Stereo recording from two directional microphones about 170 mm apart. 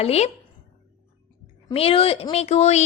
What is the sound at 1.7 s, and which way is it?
A woman's voice, 35° left (ahead or behind).